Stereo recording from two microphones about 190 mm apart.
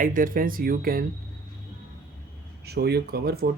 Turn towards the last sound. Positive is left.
turn(degrees=-55)  # may be behind; listen again after turning